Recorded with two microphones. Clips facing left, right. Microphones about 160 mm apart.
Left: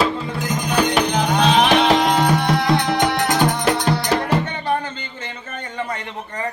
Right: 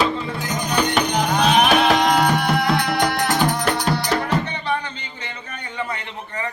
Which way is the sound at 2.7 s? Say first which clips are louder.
Left 2 dB; 20° left (ahead or behind).